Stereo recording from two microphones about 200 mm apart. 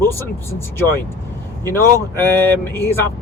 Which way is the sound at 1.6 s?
10° left (ahead or behind).